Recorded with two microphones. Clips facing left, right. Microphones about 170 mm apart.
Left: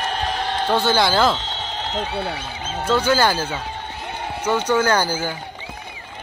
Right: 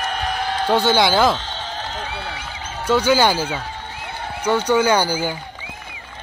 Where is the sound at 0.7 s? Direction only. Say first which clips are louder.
Right 2 dB; 15° right (ahead or behind).